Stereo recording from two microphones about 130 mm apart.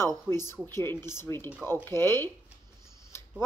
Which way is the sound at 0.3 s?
20° left (ahead or behind).